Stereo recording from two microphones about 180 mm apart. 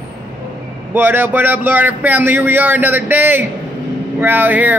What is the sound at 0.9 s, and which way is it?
Speech, 10° right (ahead or behind).